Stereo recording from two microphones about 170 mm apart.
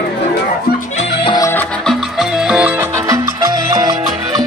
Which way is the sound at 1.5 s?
5° left (ahead or behind).